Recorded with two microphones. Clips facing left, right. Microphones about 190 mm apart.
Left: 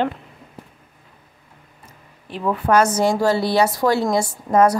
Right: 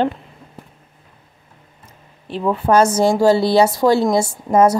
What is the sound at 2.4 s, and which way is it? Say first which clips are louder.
Speech: right 3 dB; 25° right (ahead or behind).